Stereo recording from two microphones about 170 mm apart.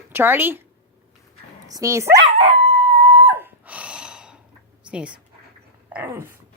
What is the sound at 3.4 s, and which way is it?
Gasp, 10° right (ahead or behind).